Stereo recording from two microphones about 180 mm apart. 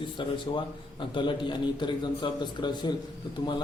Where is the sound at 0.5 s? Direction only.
25° left (ahead or behind).